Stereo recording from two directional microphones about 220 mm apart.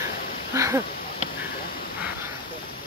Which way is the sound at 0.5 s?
15° right (ahead or behind).